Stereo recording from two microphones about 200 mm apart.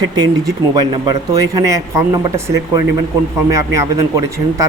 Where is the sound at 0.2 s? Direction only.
20° right (ahead or behind).